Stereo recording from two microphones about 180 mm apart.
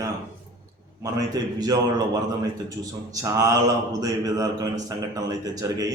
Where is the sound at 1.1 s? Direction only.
20° right (ahead or behind).